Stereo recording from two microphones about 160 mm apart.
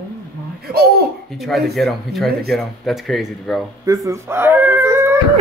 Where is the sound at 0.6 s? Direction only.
75° right (ahead or behind).